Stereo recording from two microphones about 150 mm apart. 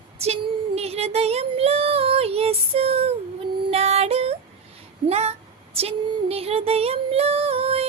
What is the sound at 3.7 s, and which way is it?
Yodeling, 45° right (ahead or behind).